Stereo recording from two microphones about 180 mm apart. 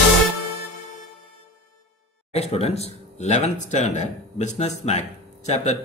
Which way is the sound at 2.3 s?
35° left (ahead or behind).